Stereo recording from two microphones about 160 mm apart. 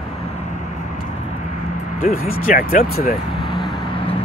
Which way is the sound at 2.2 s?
65° left (ahead or behind).